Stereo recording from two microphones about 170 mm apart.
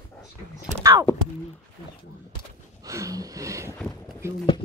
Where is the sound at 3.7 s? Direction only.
5° left (ahead or behind).